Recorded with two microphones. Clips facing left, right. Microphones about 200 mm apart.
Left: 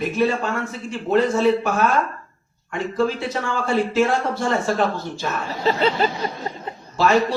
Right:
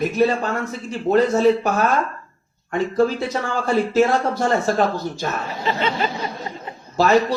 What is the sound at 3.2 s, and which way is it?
Speech, 40° right (ahead or behind).